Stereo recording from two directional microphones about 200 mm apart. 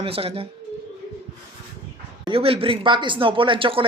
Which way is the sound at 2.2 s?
25° right (ahead or behind).